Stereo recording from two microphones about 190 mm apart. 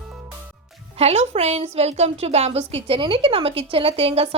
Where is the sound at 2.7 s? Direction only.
30° right (ahead or behind).